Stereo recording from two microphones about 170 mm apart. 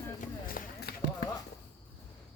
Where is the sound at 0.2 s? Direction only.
55° left (ahead or behind).